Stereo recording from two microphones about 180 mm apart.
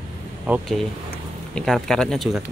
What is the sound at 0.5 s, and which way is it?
Speech, 10° right (ahead or behind).